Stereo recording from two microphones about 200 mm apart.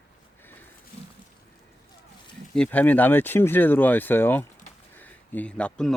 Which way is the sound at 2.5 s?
5° left (ahead or behind).